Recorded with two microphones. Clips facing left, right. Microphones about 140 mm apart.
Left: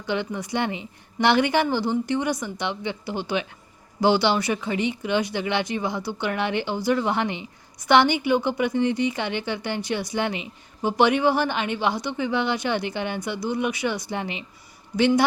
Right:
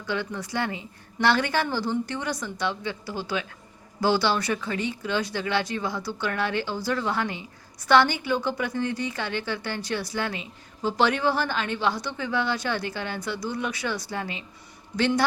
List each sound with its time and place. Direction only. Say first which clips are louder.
0.0 s a woman's voice: left 3 dB; 20° left (ahead or behind)